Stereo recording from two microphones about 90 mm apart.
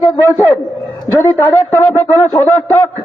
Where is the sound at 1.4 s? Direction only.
30° left (ahead or behind).